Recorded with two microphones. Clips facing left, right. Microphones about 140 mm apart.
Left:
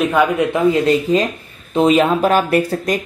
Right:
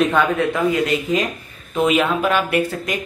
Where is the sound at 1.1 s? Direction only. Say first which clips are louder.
Left 4 dB; 35° left (ahead or behind).